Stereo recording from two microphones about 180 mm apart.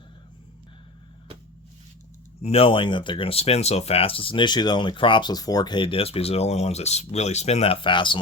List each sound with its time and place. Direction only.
2.4 s speech: 35° left (ahead or behind)